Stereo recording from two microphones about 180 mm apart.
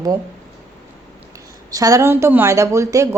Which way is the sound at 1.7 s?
20° right (ahead or behind).